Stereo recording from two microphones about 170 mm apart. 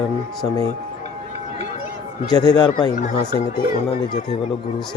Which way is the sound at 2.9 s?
45° left (ahead or behind).